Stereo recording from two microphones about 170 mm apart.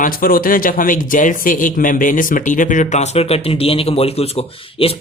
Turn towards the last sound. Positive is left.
turn(degrees=35)  # may be behind; listen again after turning